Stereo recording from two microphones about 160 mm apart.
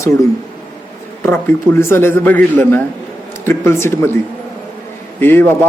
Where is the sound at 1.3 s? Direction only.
15° left (ahead or behind).